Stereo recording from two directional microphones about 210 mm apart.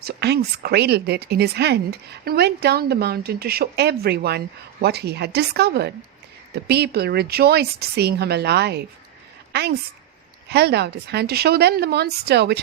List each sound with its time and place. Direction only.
0.0 s a woman's voice: 50° right (ahead or behind)